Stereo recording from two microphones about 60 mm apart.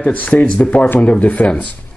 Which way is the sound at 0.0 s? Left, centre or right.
Left.